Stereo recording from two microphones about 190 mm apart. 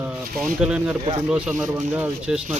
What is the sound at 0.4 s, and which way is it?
Speech, 5° right (ahead or behind).